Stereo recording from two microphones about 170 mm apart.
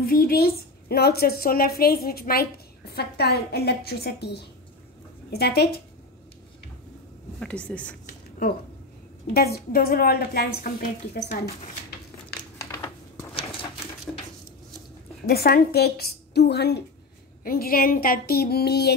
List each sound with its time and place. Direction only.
0.0 s a woman's voice: 60° left (ahead or behind)
7.3 s speech: 5° left (ahead or behind)
8.1 s a sound: 55° left (ahead or behind)
9.3 s a woman's voice: 65° left (ahead or behind)
13.3 s a sound: 30° left (ahead or behind)
15.2 s a woman's voice: 65° left (ahead or behind)
17.4 s a woman's voice: 60° left (ahead or behind)